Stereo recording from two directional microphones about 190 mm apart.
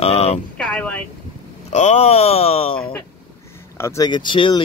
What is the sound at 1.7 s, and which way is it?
Speech, 35° left (ahead or behind).